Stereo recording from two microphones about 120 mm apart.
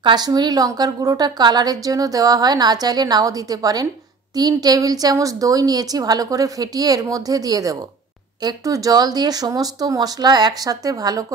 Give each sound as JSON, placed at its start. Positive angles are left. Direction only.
{"t": 0.0, "sound": "a woman's voice", "side_deg": -35}